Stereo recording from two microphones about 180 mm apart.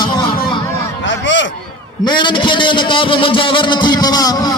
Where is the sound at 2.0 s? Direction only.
25° left (ahead or behind).